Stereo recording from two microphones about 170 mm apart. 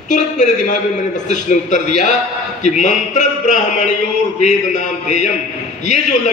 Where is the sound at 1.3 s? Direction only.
45° left (ahead or behind).